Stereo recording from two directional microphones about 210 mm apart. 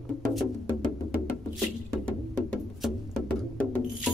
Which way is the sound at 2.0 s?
5° left (ahead or behind).